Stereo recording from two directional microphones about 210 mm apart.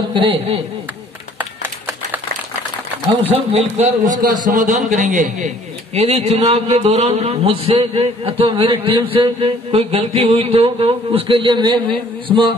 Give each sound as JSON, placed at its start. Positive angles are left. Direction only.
{"t": 0.1, "sound": "a man's voice", "side_deg": -25}
{"t": 1.4, "sound": "a sound", "side_deg": -10}
{"t": 3.2, "sound": "a man's voice", "side_deg": -30}